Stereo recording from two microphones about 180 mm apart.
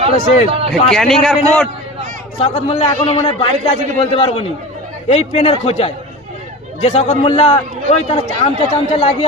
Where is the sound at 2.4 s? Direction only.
30° left (ahead or behind).